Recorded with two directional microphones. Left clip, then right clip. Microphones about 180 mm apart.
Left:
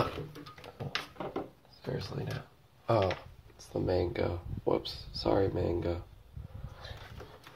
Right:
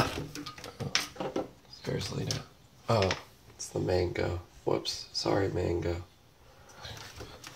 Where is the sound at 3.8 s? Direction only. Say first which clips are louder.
Right 1 dB; 30° left (ahead or behind).